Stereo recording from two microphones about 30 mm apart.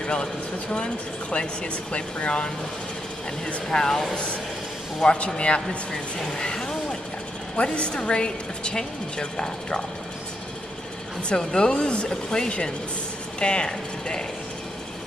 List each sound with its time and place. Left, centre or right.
0.0 s speech: left
3.7 s a woman's voice: left
4.1 s speech: left
6.3 s a sound: left
7.5 s a woman's voice: left
11.2 s a woman's voice: left